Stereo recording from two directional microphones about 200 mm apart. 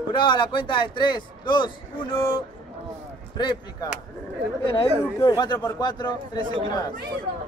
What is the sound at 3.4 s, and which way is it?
A man's voice, 20° left (ahead or behind).